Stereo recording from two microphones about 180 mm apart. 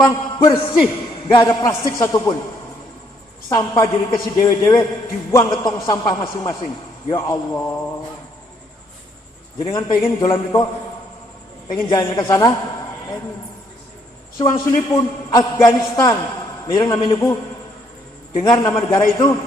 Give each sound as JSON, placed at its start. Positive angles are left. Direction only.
{"t": 0.0, "sound": "a sound", "side_deg": 20}
{"t": 1.3, "sound": "a man's voice", "side_deg": 20}
{"t": 3.5, "sound": "a man's voice", "side_deg": 20}
{"t": 9.6, "sound": "a man's voice", "side_deg": 25}
{"t": 11.7, "sound": "a man's voice", "side_deg": 25}
{"t": 14.5, "sound": "a man's voice", "side_deg": 25}
{"t": 18.3, "sound": "a man's voice", "side_deg": 25}